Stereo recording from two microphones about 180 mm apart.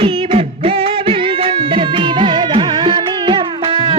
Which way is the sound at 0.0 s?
30° right (ahead or behind).